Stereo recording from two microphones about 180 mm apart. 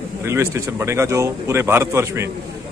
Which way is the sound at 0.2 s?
15° right (ahead or behind).